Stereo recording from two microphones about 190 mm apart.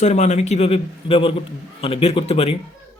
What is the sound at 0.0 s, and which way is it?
A man's voice, 35° left (ahead or behind).